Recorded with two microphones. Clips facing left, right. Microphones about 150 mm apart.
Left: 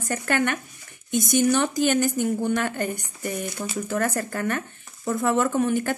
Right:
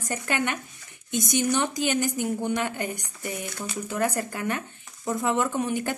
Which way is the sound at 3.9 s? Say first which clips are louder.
Left 1 dB; 15° right (ahead or behind).